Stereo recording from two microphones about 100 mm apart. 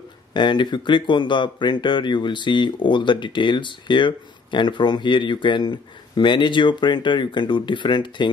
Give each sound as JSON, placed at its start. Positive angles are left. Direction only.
{"t": 0.3, "sound": "speech", "side_deg": 50}